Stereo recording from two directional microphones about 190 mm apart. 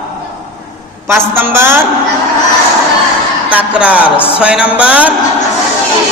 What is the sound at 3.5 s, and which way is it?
Speech, 10° right (ahead or behind).